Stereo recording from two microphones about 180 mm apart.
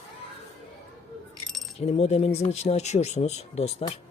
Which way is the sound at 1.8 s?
35° left (ahead or behind).